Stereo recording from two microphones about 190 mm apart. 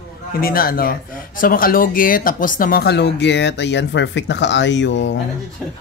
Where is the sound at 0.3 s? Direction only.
50° left (ahead or behind); by 5.2 s 70° left (ahead or behind).